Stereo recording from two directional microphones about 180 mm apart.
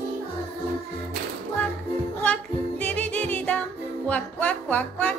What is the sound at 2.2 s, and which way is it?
Music, 5° left (ahead or behind).